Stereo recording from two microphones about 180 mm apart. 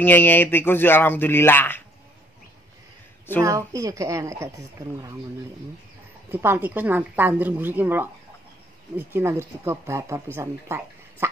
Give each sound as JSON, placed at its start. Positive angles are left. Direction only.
{"t": 0.0, "sound": "speech", "side_deg": 10}
{"t": 3.4, "sound": "speech", "side_deg": -20}
{"t": 6.3, "sound": "speech", "side_deg": -10}